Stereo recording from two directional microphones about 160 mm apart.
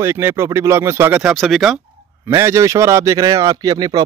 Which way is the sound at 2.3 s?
20° right (ahead or behind).